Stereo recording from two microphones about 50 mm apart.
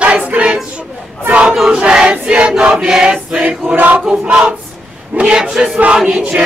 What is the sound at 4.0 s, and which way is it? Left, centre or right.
Choir, centre.